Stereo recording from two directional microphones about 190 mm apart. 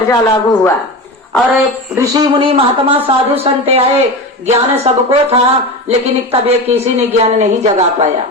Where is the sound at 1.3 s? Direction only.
10° right (ahead or behind).